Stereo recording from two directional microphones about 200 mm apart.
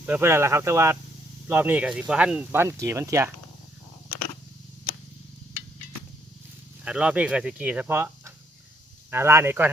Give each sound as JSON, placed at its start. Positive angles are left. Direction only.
{"t": 0.0, "sound": "speech", "side_deg": -10}
{"t": 6.8, "sound": "speech", "side_deg": -5}